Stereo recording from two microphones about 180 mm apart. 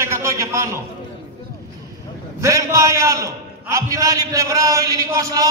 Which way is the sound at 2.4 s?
15° right (ahead or behind).